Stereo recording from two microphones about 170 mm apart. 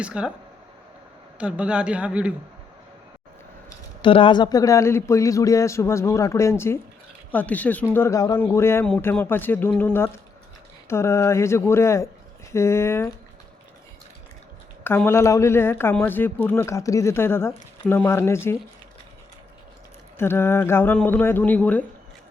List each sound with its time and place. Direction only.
0.0 s a man's voice: 5° right (ahead or behind)
1.4 s a man's voice: 5° right (ahead or behind)
4.0 s speech: 30° left (ahead or behind); by 13.1 s 15° left (ahead or behind)
14.8 s speech: 15° left (ahead or behind)
20.1 s speech: 15° left (ahead or behind)